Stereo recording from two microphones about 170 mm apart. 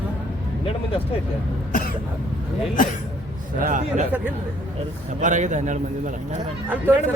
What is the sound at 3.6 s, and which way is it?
Speech, 50° right (ahead or behind).